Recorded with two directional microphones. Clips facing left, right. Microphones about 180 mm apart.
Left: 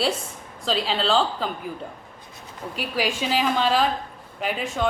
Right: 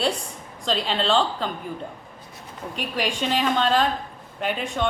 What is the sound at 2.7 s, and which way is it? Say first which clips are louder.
Speech: left 1 dB; 5° left (ahead or behind).